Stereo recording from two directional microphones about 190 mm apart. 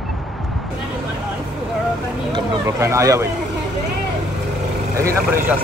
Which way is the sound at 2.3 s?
15° right (ahead or behind).